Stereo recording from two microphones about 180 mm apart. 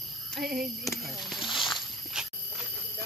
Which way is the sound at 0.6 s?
Centre (ahead or behind).